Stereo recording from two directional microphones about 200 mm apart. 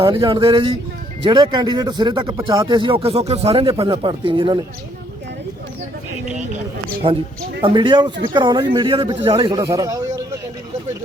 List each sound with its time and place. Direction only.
0.0 s speech: 20° right (ahead or behind)
7.0 s speech: 30° right (ahead or behind)